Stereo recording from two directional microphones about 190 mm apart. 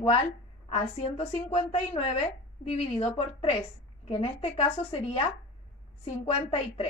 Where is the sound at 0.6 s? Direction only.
30° left (ahead or behind).